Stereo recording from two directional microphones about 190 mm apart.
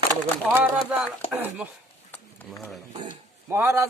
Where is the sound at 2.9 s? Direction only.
25° right (ahead or behind).